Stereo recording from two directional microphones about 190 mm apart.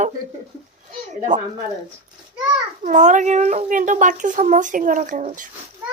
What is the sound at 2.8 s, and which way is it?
Speech, 40° right (ahead or behind).